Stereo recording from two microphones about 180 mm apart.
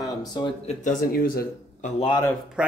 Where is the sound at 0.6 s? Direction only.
50° left (ahead or behind).